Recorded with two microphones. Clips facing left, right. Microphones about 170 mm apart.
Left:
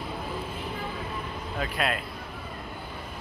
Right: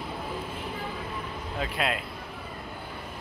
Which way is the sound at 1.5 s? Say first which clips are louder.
Even; 20° right (ahead or behind).